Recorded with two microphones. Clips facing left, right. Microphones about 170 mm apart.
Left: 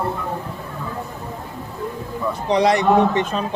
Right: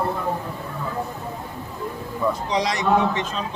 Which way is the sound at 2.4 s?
60° left (ahead or behind).